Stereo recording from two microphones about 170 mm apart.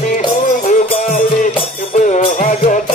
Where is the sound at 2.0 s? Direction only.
45° left (ahead or behind).